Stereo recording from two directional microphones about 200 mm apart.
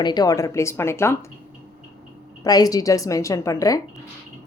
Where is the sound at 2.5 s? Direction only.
20° left (ahead or behind).